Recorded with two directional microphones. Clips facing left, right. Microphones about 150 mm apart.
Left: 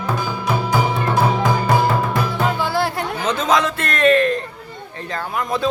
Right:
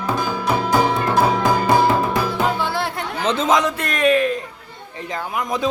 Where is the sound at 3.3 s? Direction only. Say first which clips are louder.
Right 1 dB; 25° right (ahead or behind); by 4.4 s 10° right (ahead or behind).